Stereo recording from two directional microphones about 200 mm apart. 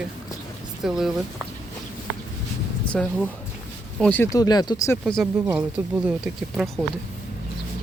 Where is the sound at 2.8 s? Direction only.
5° left (ahead or behind).